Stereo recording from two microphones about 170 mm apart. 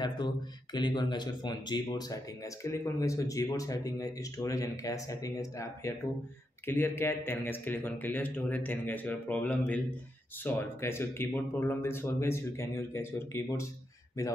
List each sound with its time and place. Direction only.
0.7 s speech: 25° left (ahead or behind)